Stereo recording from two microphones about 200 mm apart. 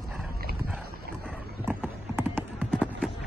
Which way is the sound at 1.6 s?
10° right (ahead or behind).